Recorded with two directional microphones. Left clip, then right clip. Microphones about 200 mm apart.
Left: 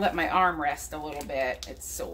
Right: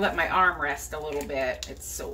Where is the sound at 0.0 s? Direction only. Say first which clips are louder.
Right 1 dB; 35° left (ahead or behind).